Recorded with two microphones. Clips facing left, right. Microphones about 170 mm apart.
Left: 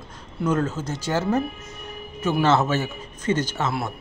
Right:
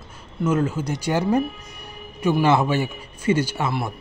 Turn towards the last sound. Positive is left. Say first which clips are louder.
# right 2 dB
turn(degrees=-10)  # may be behind; listen again after turning